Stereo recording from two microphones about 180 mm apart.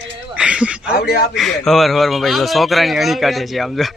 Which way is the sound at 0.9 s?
60° left (ahead or behind).